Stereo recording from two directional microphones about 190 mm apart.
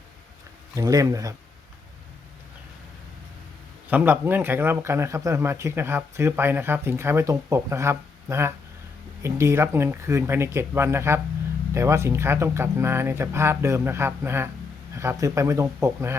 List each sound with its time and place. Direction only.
0.8 s speech: 20° right (ahead or behind)
3.8 s speech: 10° right (ahead or behind)